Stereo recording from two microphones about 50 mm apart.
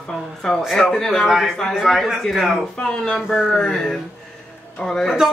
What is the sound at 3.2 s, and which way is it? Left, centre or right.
Speech, centre.